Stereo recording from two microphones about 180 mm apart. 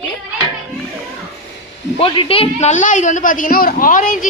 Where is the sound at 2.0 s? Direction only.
30° left (ahead or behind).